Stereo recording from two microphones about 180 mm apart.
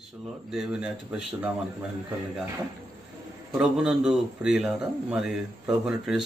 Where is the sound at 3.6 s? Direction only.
5° right (ahead or behind).